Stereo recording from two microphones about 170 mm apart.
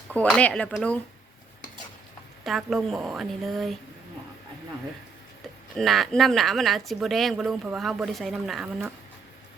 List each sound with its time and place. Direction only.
0.1 s speech: 5° left (ahead or behind)
2.4 s speech: centre (ahead or behind)
5.7 s speech: centre (ahead or behind)